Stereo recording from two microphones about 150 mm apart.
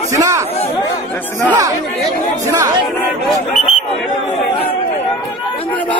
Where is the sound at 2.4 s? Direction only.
25° right (ahead or behind).